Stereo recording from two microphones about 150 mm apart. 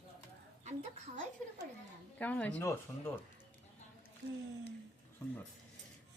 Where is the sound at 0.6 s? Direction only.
50° right (ahead or behind).